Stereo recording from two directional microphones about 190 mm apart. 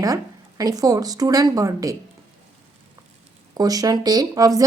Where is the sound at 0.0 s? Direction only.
20° right (ahead or behind).